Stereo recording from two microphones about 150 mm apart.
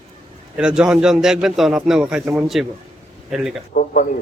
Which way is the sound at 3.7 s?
65° left (ahead or behind).